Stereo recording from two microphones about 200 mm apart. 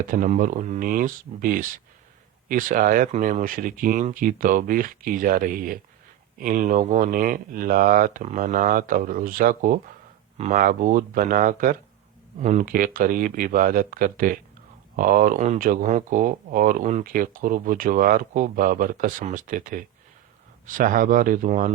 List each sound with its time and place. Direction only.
0.0 s speech: 40° right (ahead or behind)